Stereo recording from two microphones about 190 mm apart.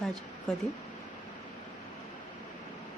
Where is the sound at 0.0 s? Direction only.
Centre (ahead or behind).